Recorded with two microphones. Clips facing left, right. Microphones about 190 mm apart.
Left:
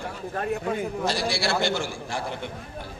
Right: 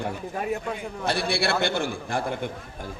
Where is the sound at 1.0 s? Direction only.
60° right (ahead or behind).